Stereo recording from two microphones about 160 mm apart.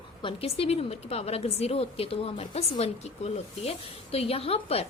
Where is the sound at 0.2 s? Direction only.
35° left (ahead or behind).